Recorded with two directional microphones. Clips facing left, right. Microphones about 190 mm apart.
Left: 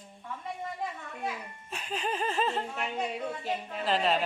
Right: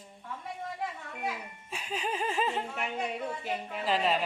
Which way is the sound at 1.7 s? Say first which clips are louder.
Left 1 dB; 10° right (ahead or behind).